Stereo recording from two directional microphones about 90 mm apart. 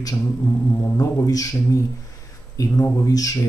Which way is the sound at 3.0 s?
40° left (ahead or behind).